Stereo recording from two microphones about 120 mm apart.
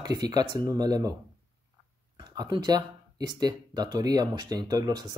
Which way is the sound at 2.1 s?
40° right (ahead or behind).